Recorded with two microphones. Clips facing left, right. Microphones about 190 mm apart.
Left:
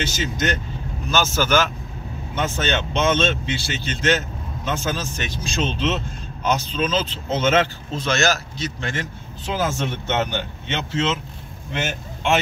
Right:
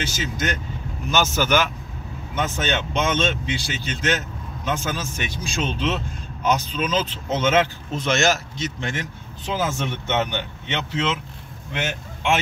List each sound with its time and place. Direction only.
0.0 s a man's voice: 10° right (ahead or behind)